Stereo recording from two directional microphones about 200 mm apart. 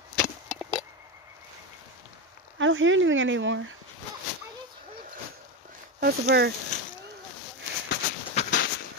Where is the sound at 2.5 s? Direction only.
75° right (ahead or behind).